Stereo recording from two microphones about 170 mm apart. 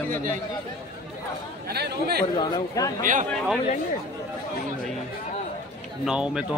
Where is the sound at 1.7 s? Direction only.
70° right (ahead or behind).